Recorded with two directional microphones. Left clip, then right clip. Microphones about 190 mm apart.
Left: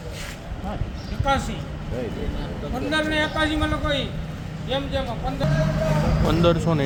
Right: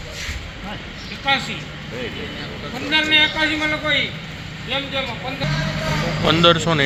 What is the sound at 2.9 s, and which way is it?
Speech, 30° left (ahead or behind).